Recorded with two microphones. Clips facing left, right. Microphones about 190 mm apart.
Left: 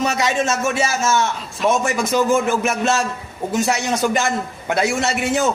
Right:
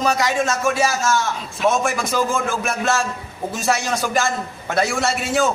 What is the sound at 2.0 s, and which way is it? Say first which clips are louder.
Speech: left 4 dB; 20° left (ahead or behind).